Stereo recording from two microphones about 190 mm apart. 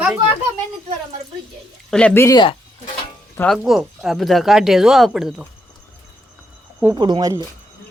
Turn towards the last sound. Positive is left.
turn(degrees=-20)  # may be behind; listen again after turning